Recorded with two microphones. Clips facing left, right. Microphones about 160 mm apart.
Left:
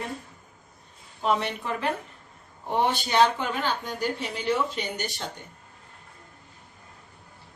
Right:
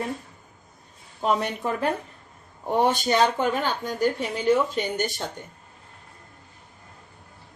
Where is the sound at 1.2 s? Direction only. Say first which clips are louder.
Right 2 dB; 45° right (ahead or behind).